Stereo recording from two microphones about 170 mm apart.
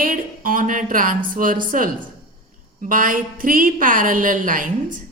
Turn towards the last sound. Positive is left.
turn(degrees=-50)  # may be behind; listen again after turning